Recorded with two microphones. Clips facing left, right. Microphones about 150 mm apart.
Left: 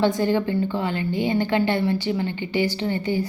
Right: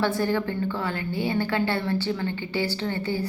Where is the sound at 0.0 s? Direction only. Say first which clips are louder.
Left 4 dB; 20° left (ahead or behind).